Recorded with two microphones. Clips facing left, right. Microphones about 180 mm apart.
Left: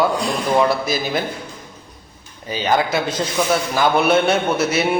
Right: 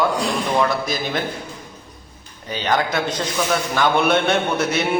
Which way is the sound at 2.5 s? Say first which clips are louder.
Left 2 dB; 5° left (ahead or behind).